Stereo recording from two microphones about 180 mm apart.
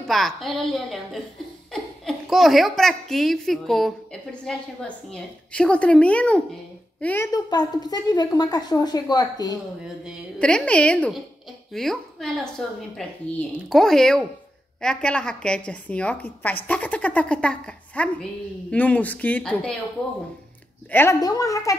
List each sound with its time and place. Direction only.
0.0 s a woman's voice: centre (ahead or behind)
7.3 s a woman's voice: 20° left (ahead or behind)
10.0 s a woman's voice: 5° left (ahead or behind)
20.9 s a woman's voice: 15° left (ahead or behind)